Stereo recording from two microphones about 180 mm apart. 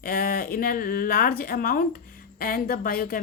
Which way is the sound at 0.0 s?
55° left (ahead or behind).